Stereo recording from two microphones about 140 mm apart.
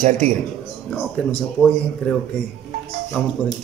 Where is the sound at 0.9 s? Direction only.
5° left (ahead or behind).